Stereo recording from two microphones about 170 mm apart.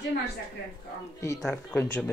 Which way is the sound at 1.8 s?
10° left (ahead or behind).